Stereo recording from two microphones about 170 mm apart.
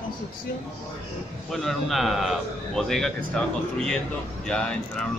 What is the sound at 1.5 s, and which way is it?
Speech, centre (ahead or behind).